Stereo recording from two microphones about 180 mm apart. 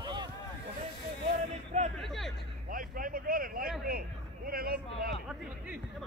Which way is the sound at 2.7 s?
50° right (ahead or behind).